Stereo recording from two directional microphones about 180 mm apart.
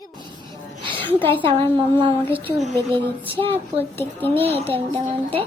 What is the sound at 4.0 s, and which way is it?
Speech, 10° left (ahead or behind).